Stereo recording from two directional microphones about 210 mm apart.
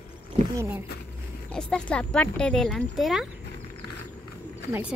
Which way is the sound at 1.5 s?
5° left (ahead or behind).